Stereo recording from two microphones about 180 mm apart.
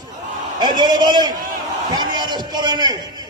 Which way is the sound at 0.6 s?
25° right (ahead or behind).